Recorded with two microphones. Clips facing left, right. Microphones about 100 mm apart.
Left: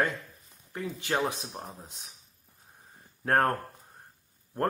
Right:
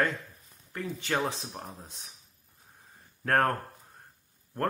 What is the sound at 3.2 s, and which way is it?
Speech, 15° left (ahead or behind).